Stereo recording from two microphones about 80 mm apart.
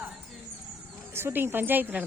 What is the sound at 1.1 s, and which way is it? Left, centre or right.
Speech, right.